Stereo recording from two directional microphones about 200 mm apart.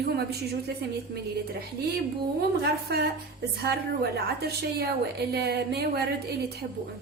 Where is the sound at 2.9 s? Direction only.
55° right (ahead or behind).